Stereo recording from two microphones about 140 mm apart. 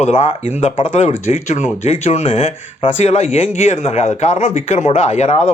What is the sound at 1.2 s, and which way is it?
Speech, 60° left (ahead or behind).